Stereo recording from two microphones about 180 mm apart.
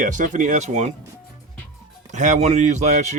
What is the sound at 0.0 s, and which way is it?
Speech, 45° right (ahead or behind).